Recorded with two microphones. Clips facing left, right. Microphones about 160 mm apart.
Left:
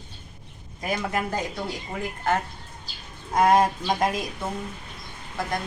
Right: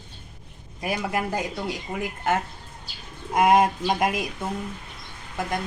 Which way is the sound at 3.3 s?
10° right (ahead or behind).